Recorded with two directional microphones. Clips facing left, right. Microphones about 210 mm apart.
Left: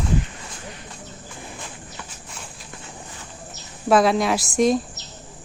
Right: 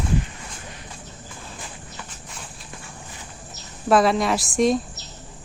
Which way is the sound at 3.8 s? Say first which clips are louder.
Left 1 dB; centre (ahead or behind).